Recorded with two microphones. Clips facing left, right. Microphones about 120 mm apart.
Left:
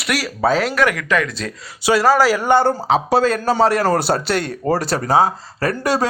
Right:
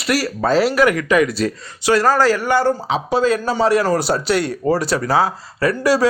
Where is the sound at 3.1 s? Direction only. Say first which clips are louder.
Right 1 dB; 60° left (ahead or behind).